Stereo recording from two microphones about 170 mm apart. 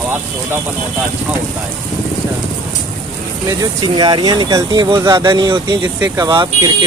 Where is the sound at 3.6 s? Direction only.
25° right (ahead or behind).